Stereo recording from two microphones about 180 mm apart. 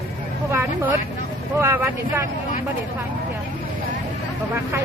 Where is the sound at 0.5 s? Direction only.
10° right (ahead or behind).